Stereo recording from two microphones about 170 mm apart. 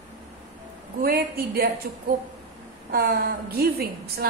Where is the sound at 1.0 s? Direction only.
65° right (ahead or behind).